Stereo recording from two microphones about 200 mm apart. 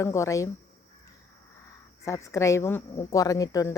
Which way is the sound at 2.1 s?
15° left (ahead or behind).